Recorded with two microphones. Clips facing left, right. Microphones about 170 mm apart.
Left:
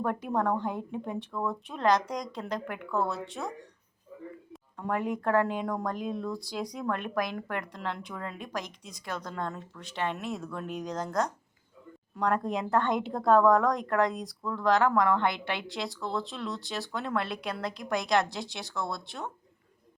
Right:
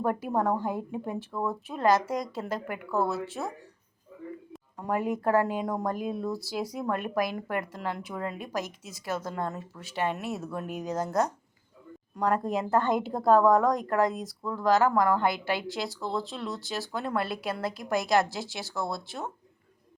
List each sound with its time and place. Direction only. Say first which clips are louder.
0.0 s a woman's voice: right 2 dB; 5° right (ahead or behind)
4.5 s a woman's voice: right 2 dB; 5° right (ahead or behind)